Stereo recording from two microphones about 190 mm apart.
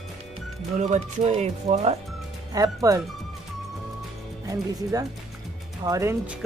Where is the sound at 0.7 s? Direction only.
40° right (ahead or behind).